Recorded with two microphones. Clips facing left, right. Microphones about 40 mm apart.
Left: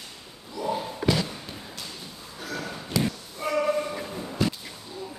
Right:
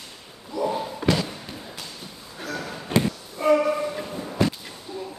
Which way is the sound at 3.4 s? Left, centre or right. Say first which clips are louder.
Right 10 dB; right.